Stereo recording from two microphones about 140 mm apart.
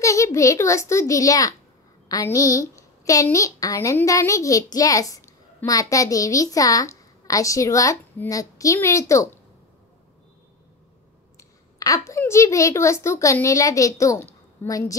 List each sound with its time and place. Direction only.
0.0 s a child's voice: 20° left (ahead or behind)
11.3 s a woman's voice: 25° left (ahead or behind)